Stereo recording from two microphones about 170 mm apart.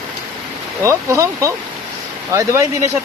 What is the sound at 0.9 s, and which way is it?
Speech, 15° right (ahead or behind).